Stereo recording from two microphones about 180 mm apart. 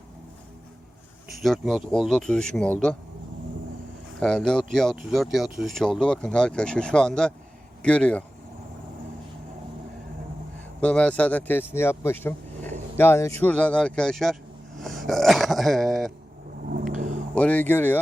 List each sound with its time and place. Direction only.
1.3 s speech: centre (ahead or behind)
4.2 s speech: 5° left (ahead or behind)
10.8 s speech: 5° left (ahead or behind)
14.8 s a sound: centre (ahead or behind)
16.7 s vehicle: 45° right (ahead or behind)
17.3 s speech: 10° left (ahead or behind)